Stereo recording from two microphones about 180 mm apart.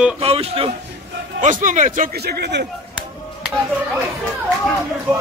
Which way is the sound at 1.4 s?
45° right (ahead or behind).